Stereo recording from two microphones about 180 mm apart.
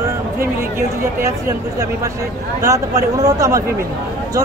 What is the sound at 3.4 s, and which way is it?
Speech, 15° right (ahead or behind).